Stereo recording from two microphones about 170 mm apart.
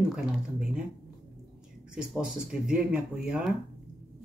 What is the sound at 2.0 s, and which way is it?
Speech, 5° right (ahead or behind).